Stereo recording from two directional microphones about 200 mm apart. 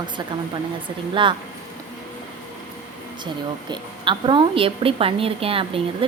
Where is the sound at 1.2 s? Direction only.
25° right (ahead or behind).